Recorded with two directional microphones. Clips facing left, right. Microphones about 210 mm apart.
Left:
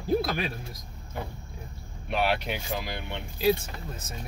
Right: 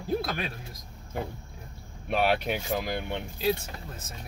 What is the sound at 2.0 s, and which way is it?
Speech, 45° right (ahead or behind).